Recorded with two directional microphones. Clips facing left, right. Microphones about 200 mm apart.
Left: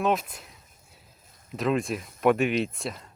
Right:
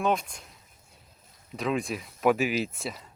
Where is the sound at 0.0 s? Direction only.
Centre (ahead or behind).